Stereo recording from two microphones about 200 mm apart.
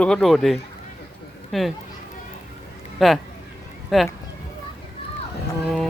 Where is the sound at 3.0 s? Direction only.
Centre (ahead or behind).